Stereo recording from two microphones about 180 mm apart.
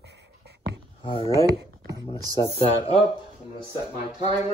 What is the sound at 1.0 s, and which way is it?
Speech, 30° left (ahead or behind).